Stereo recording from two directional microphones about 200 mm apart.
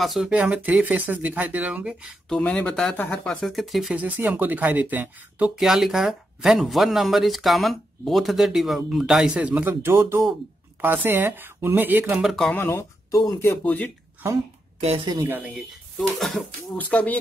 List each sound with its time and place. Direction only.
0.0 s speech: centre (ahead or behind)
12.2 s speech: centre (ahead or behind)
12.6 s speech: 15° left (ahead or behind)
14.8 s speech: 25° right (ahead or behind)
15.2 s speech: 10° right (ahead or behind); by 17.2 s 5° left (ahead or behind)